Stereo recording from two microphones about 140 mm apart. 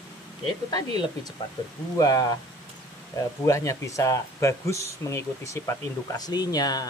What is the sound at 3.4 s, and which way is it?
A woman's voice, 20° left (ahead or behind).